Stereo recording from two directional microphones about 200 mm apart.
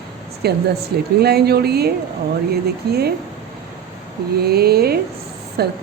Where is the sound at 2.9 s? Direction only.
50° right (ahead or behind).